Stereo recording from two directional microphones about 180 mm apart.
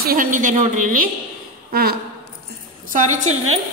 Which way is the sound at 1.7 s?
60° right (ahead or behind).